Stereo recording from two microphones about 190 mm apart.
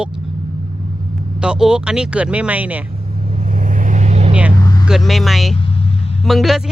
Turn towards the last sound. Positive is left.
turn(degrees=0)  # may be behind; listen again after turning